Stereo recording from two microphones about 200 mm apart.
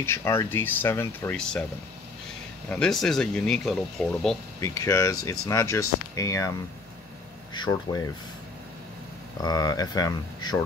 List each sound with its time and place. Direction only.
0.0 s speech: 10° left (ahead or behind)
2.7 s speech: 5° left (ahead or behind)
4.6 s speech: 15° left (ahead or behind)
7.5 s speech: 20° left (ahead or behind)
9.4 s speech: 20° left (ahead or behind)